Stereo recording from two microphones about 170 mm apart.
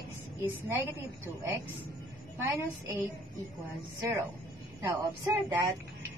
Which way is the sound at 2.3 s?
15° right (ahead or behind).